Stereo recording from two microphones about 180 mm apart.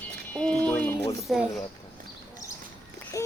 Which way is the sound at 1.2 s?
Centre (ahead or behind).